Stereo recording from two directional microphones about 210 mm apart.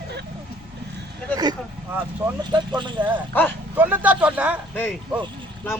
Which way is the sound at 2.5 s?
20° right (ahead or behind).